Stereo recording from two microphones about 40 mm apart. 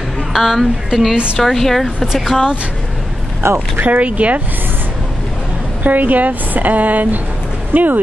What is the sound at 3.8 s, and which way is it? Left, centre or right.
Speech, right.